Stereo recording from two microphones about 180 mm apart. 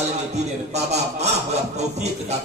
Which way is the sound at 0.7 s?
40° right (ahead or behind).